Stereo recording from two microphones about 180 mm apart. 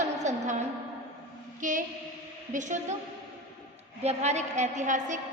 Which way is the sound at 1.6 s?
45° right (ahead or behind).